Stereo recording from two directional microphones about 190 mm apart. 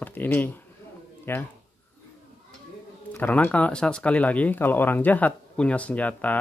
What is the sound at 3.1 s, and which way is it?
Speech, 10° left (ahead or behind).